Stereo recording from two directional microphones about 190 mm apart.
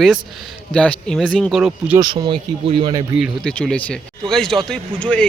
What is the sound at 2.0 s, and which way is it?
Speech, 20° right (ahead or behind).